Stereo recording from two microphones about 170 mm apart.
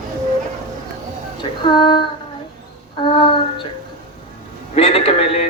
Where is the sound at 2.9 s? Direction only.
30° left (ahead or behind).